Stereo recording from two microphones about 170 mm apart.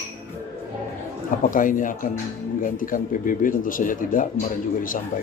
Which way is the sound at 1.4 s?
50° left (ahead or behind).